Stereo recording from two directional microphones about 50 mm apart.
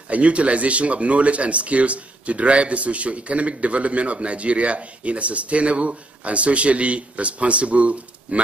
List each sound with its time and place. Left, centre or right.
0.1 s speech: right